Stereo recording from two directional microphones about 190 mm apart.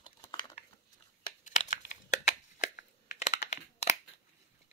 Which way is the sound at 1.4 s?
40° left (ahead or behind).